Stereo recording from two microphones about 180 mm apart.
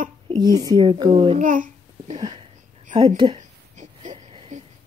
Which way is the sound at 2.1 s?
25° right (ahead or behind).